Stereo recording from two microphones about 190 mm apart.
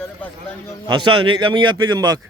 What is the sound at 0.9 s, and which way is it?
A man's voice, 25° right (ahead or behind).